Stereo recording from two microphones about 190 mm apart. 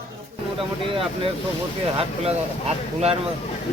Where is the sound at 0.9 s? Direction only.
30° right (ahead or behind).